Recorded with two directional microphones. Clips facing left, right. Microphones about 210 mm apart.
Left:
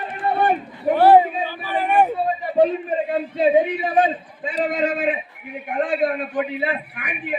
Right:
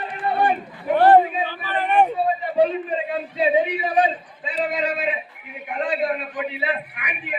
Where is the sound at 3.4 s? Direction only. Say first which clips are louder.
Left 3 dB; 50° left (ahead or behind).